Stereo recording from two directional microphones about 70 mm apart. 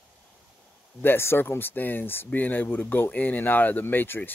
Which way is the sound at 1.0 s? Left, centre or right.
Left.